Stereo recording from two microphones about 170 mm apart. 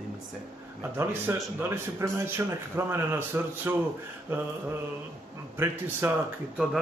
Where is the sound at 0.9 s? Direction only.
15° right (ahead or behind).